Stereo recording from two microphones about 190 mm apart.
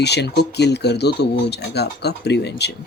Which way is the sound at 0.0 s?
60° left (ahead or behind).